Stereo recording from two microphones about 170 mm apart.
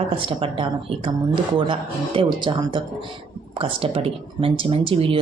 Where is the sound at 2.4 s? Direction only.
25° right (ahead or behind).